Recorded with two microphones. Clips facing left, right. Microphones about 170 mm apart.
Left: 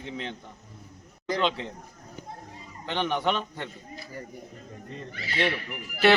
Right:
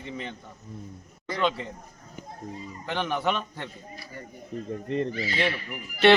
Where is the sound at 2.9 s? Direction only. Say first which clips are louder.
Left 1 dB; 5° right (ahead or behind).